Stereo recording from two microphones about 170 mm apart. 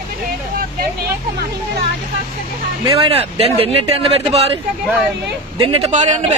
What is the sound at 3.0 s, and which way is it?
A man's voice, 35° right (ahead or behind).